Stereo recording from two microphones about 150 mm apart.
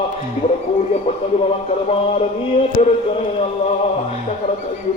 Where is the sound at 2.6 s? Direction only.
45° left (ahead or behind).